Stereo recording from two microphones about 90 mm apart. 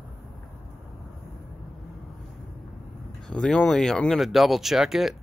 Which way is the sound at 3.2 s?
10° left (ahead or behind).